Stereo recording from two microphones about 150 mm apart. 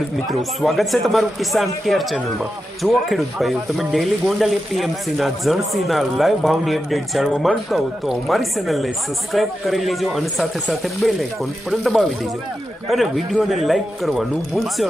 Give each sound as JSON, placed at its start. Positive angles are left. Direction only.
{"t": 0.3, "sound": "speech", "side_deg": 0}